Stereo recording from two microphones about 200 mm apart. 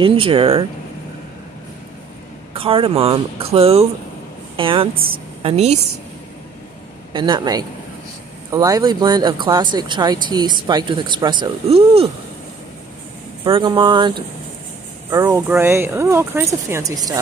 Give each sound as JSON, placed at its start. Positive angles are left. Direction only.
{"t": 0.0, "sound": "speech", "side_deg": -25}
{"t": 2.5, "sound": "speech", "side_deg": -25}
{"t": 4.9, "sound": "a woman's voice", "side_deg": -45}
{"t": 5.4, "sound": "speech", "side_deg": -30}
{"t": 7.2, "sound": "speech", "side_deg": -20}
{"t": 13.4, "sound": "speech", "side_deg": -25}